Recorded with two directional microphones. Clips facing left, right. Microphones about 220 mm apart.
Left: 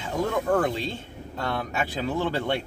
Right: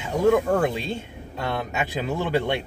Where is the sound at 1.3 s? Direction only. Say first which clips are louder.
Right 1 dB; 15° right (ahead or behind).